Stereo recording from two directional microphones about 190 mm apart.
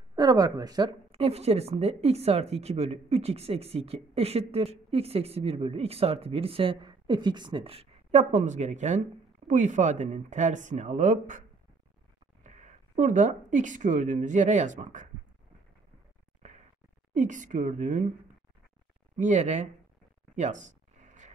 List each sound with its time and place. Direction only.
0.1 s a woman's voice: 20° right (ahead or behind); by 11.4 s 40° right (ahead or behind)
12.4 s speech: 40° right (ahead or behind)
17.1 s a woman's voice: 40° right (ahead or behind)
19.1 s a woman's voice: 40° right (ahead or behind)
20.3 s a sound: 40° right (ahead or behind)